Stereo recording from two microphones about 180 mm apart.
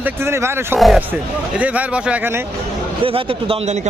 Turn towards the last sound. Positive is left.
turn(degrees=-30)  # may be behind; listen again after turning